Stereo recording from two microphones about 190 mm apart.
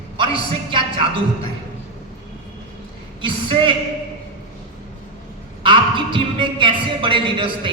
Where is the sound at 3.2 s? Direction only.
25° right (ahead or behind).